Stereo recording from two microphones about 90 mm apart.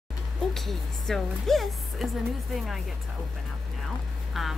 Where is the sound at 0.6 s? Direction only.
5° left (ahead or behind).